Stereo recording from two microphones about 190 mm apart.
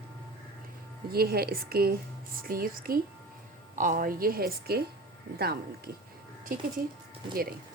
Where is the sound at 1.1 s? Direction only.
55° right (ahead or behind).